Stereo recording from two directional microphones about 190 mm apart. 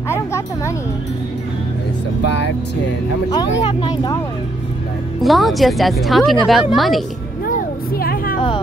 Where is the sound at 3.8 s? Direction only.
20° left (ahead or behind).